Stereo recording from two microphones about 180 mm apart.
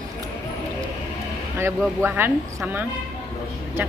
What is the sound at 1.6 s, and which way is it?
Speech, 10° right (ahead or behind).